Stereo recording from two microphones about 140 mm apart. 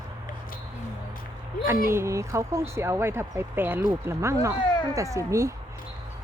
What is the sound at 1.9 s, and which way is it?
Speech, 20° right (ahead or behind).